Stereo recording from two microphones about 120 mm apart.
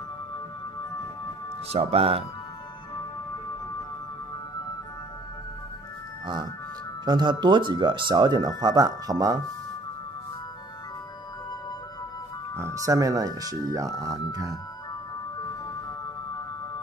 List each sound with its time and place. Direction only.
1.7 s speech: 55° right (ahead or behind)
7.1 s speech: 40° right (ahead or behind)
12.5 s speech: 25° right (ahead or behind)